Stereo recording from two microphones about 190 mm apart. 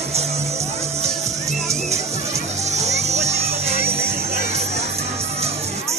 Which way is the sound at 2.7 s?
35° right (ahead or behind).